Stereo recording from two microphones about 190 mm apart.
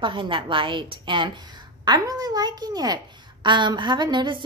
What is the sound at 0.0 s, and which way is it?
Speech, 25° right (ahead or behind).